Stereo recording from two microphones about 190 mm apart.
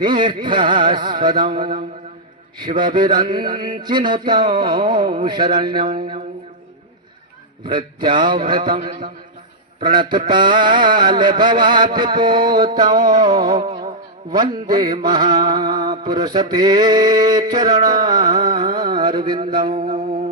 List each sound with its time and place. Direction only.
0.0 s mantra: 25° right (ahead or behind)
7.6 s mantra: 25° right (ahead or behind)
18.0 s a sound: 20° right (ahead or behind)